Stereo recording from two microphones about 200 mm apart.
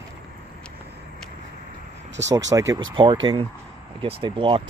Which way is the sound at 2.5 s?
15° right (ahead or behind).